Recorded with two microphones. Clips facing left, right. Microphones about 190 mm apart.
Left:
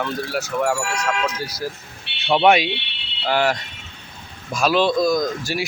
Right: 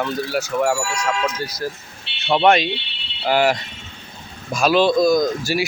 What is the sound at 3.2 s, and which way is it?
Speech, 10° right (ahead or behind).